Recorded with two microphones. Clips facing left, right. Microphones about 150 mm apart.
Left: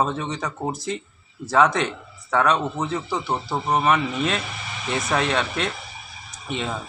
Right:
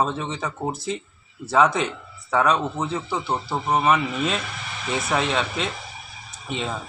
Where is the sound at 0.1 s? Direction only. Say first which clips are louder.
Left 1 dB; 5° right (ahead or behind).